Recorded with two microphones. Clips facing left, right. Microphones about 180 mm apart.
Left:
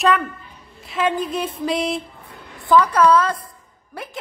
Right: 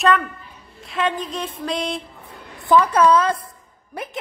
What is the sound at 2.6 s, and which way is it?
A woman's voice, 20° right (ahead or behind).